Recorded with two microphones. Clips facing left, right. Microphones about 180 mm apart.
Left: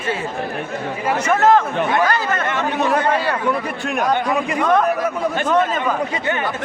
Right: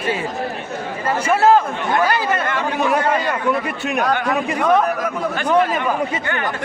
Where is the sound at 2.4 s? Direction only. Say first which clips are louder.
Even; 25° left (ahead or behind).